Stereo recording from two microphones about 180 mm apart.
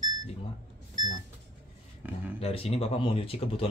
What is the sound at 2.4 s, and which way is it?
Speech, 35° left (ahead or behind).